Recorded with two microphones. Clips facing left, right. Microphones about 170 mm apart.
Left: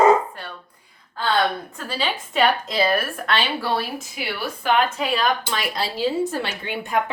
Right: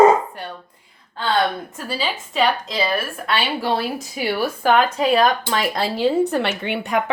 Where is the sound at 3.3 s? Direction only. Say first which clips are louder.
Right 2 dB; 20° right (ahead or behind).